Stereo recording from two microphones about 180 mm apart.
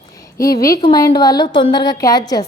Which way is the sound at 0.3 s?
20° left (ahead or behind).